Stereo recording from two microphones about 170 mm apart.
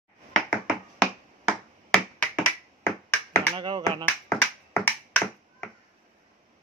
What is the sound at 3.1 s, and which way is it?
Tap, 15° left (ahead or behind).